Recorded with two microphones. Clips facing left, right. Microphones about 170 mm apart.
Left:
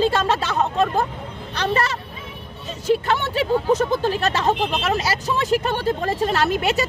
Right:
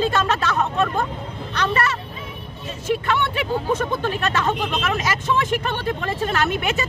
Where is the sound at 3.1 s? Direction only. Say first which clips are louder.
Left 2 dB; 35° left (ahead or behind).